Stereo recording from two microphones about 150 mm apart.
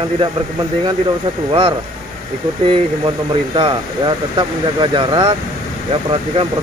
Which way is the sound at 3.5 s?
35° right (ahead or behind).